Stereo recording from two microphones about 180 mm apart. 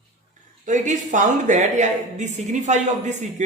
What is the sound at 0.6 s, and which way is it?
Speech, 45° right (ahead or behind).